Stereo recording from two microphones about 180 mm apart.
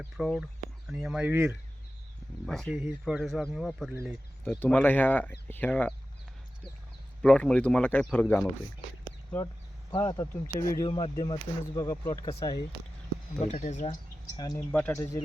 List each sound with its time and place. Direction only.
0.0 s speech: centre (ahead or behind)
2.5 s speech: centre (ahead or behind)
7.2 s speech: 5° left (ahead or behind)
10.0 s speech: 20° left (ahead or behind)
11.9 s speech: 15° left (ahead or behind)
13.4 s speech: 40° left (ahead or behind)
14.3 s speech: 20° left (ahead or behind)
14.7 s speech: 10° left (ahead or behind)